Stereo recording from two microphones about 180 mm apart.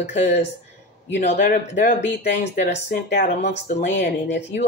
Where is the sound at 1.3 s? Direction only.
50° left (ahead or behind).